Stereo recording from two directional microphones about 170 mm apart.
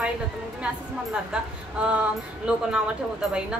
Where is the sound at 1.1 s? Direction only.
5° right (ahead or behind).